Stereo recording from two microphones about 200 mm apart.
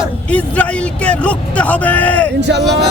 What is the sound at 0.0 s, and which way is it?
A man's voice, 5° left (ahead or behind).